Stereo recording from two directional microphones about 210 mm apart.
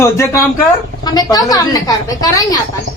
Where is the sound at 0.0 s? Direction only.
10° left (ahead or behind).